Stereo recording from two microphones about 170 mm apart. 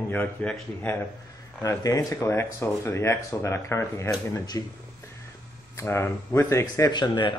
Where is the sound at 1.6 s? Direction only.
20° left (ahead or behind).